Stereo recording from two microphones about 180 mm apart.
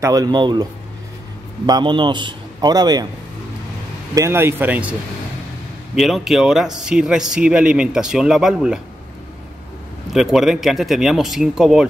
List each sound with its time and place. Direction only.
0.0 s a man's voice: 20° right (ahead or behind)
1.7 s a man's voice: 25° right (ahead or behind)
4.1 s speech: 15° right (ahead or behind)
5.9 s a man's voice: centre (ahead or behind)
10.1 s a man's voice: centre (ahead or behind)